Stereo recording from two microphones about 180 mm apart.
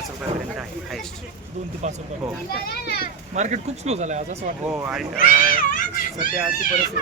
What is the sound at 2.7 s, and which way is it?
Speech, 60° left (ahead or behind).